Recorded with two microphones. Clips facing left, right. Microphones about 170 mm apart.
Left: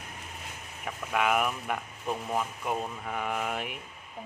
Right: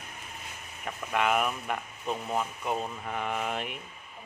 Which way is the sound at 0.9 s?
5° left (ahead or behind).